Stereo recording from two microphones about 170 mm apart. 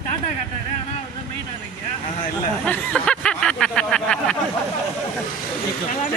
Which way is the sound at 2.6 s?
5° left (ahead or behind).